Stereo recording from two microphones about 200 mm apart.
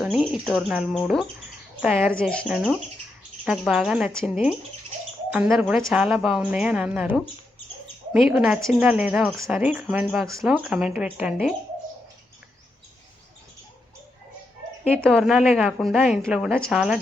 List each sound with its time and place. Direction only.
0.0 s speech: centre (ahead or behind)
2.1 s speech: 5° left (ahead or behind)
15.0 s speech: centre (ahead or behind)